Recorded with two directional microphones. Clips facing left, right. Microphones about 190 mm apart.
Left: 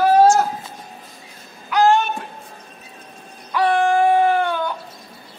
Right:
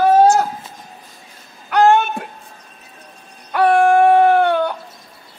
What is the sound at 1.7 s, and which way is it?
Music, 60° right (ahead or behind).